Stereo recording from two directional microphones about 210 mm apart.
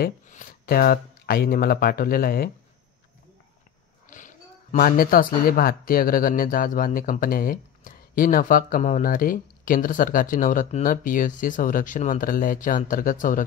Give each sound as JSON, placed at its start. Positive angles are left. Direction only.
{"t": 0.0, "sound": "speech", "side_deg": 40}
{"t": 4.1, "sound": "speech", "side_deg": 40}